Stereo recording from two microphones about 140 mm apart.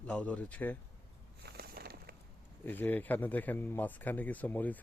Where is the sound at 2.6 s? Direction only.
15° left (ahead or behind).